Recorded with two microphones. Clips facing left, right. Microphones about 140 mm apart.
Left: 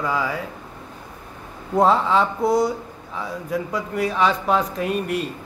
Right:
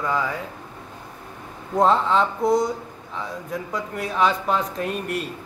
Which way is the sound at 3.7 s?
5° left (ahead or behind).